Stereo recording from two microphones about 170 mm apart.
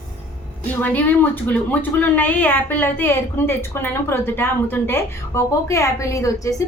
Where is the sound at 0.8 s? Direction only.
10° left (ahead or behind).